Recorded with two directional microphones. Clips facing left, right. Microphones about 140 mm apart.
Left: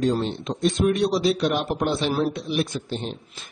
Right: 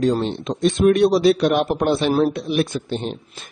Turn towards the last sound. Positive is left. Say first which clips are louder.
# right 4 dB
turn(degrees=-60)  # may be behind; listen again after turning